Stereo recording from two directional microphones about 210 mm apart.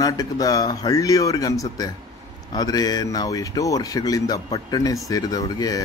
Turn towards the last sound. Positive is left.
turn(degrees=20)  # may be behind; listen again after turning